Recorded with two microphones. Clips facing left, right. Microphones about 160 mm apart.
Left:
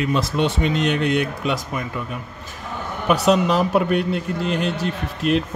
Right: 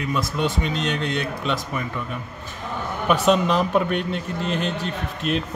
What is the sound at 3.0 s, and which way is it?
Speech, 5° left (ahead or behind).